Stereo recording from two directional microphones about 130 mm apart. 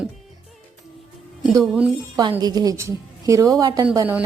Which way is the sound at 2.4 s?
30° right (ahead or behind).